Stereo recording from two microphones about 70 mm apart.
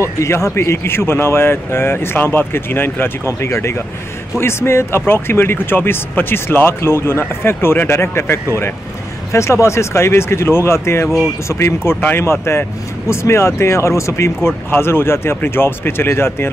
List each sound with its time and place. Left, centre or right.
0.2 s speech: left